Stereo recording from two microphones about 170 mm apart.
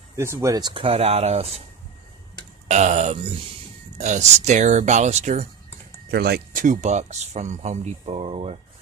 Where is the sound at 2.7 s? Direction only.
40° right (ahead or behind).